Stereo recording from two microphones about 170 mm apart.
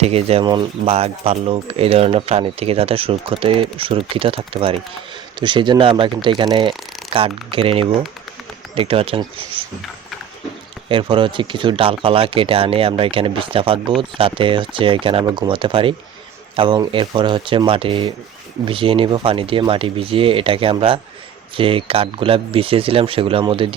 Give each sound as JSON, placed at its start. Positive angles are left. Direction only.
{"t": 0.0, "sound": "speech", "side_deg": -40}
{"t": 10.8, "sound": "speech", "side_deg": -30}